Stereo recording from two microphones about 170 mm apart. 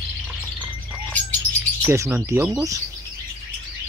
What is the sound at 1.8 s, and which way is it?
Speech, 15° right (ahead or behind).